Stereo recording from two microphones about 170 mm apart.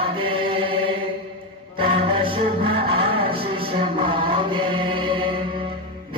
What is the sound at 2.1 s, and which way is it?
Music, 30° right (ahead or behind).